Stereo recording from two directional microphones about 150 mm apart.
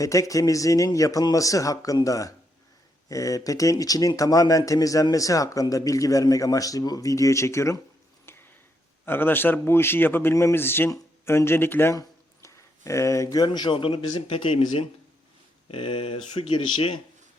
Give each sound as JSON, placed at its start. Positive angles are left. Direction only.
{"t": 0.0, "sound": "speech", "side_deg": 20}
{"t": 8.3, "sound": "a sound", "side_deg": 15}
{"t": 9.0, "sound": "speech", "side_deg": 15}